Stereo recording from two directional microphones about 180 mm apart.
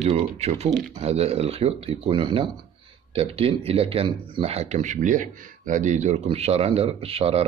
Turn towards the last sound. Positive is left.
turn(degrees=-35)  # may be behind; listen again after turning